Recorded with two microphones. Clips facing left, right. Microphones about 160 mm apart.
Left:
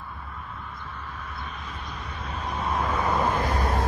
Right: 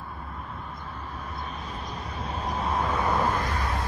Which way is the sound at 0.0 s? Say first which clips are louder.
Right 1 dB; 40° right (ahead or behind).